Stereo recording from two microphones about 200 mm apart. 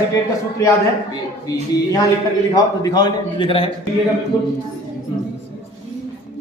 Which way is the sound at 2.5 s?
20° left (ahead or behind).